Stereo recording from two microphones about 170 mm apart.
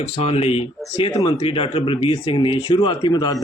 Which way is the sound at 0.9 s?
25° left (ahead or behind).